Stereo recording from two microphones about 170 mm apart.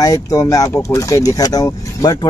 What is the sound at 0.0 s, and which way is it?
Speech, 20° left (ahead or behind).